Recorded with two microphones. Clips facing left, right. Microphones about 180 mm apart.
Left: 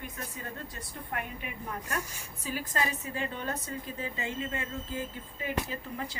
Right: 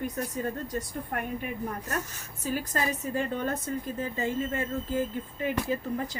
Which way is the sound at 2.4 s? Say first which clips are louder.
Right 3 dB; 45° right (ahead or behind).